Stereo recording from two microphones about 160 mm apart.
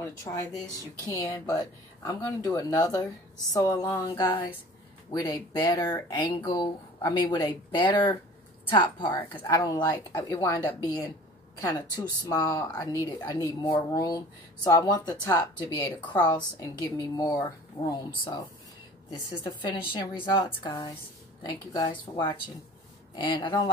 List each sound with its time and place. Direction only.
0.0 s speech: 20° left (ahead or behind)
5.1 s speech: 25° left (ahead or behind)